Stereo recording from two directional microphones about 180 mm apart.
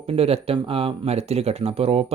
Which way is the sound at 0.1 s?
35° right (ahead or behind).